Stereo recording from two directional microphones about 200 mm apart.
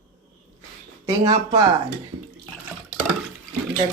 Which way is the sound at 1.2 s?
25° right (ahead or behind).